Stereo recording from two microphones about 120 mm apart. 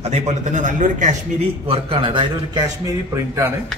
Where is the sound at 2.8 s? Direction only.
25° right (ahead or behind).